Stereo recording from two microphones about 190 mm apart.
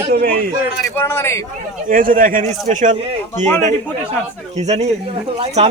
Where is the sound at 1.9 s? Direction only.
45° right (ahead or behind).